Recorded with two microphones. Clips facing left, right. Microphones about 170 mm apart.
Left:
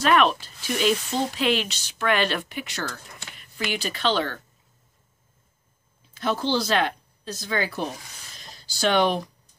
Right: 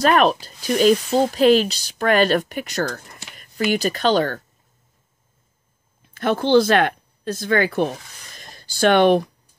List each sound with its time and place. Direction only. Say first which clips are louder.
0.0 s speech: right 4 dB; 40° right (ahead or behind)
6.0 s speech: right 5 dB; 55° right (ahead or behind)
8.4 s a sound: right 8 dB; 55° right (ahead or behind)